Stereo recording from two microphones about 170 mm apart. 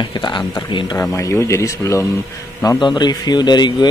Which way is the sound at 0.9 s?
15° left (ahead or behind).